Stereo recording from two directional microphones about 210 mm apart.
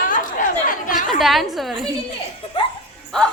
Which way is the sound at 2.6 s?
25° left (ahead or behind).